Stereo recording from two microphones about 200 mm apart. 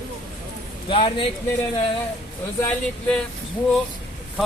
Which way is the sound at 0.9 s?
25° left (ahead or behind).